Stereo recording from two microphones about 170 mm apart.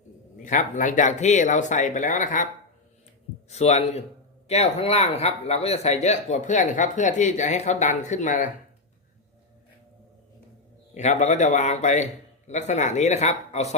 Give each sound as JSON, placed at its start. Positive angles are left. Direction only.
{"t": 0.4, "sound": "speech", "side_deg": 45}
{"t": 3.5, "sound": "a man's voice", "side_deg": 40}
{"t": 10.9, "sound": "speech", "side_deg": 40}